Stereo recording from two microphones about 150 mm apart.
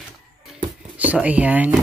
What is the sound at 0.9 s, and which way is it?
Speech, 10° right (ahead or behind).